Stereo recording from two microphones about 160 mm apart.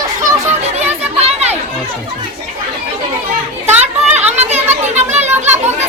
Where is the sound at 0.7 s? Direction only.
40° right (ahead or behind).